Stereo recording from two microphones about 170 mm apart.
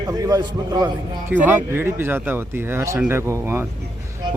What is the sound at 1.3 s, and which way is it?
Speech, 10° right (ahead or behind).